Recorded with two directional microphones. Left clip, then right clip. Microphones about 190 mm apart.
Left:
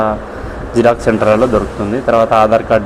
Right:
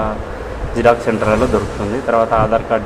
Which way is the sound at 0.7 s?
20° left (ahead or behind).